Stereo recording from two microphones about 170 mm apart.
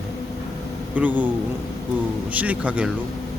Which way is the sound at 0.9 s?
10° right (ahead or behind).